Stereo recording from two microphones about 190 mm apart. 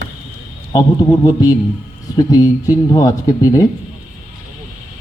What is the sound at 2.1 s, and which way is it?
Speech, 20° left (ahead or behind).